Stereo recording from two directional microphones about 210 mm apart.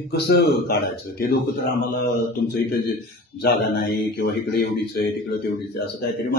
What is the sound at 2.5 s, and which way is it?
Speech, 45° left (ahead or behind).